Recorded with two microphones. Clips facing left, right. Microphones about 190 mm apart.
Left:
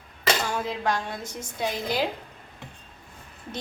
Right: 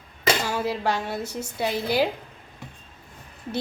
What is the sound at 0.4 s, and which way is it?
A woman's voice, 5° right (ahead or behind).